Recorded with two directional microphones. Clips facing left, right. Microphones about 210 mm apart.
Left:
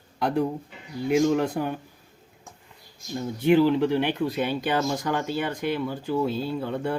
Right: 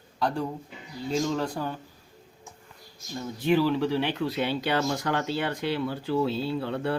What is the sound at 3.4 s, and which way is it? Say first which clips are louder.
Speech: left 4 dB; 15° left (ahead or behind).